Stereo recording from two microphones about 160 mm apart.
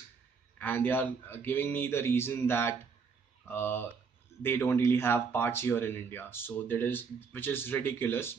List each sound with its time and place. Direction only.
0.6 s speech: 10° left (ahead or behind)